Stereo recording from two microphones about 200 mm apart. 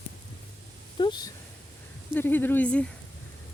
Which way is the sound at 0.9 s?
20° left (ahead or behind).